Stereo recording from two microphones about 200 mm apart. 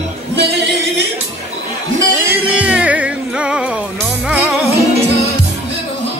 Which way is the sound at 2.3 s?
5° right (ahead or behind).